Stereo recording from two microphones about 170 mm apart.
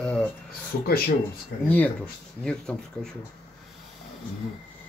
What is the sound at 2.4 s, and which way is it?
Speech, 5° left (ahead or behind).